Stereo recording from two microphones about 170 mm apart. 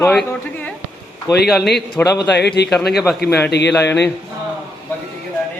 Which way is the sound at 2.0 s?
15° left (ahead or behind).